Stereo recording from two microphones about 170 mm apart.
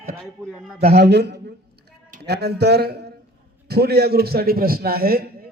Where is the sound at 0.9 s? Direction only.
80° right.